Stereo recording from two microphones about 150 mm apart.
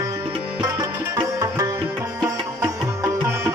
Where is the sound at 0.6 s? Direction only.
25° right (ahead or behind).